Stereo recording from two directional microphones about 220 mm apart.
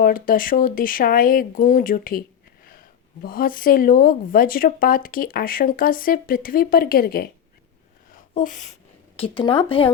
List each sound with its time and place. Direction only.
0.0 s speech: 40° left (ahead or behind)
3.2 s speech: 40° left (ahead or behind)
8.4 s speech: 35° left (ahead or behind)
9.1 s speech: 25° left (ahead or behind)